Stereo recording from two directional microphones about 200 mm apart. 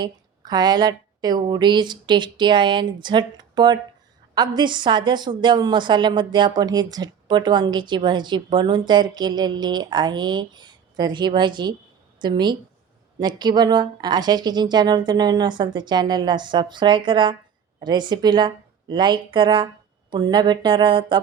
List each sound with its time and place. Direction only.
0.0 s a woman's voice: 20° right (ahead or behind)